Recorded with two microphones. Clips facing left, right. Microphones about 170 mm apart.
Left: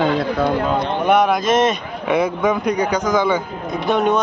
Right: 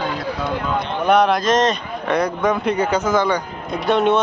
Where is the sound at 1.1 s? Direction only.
5° left (ahead or behind).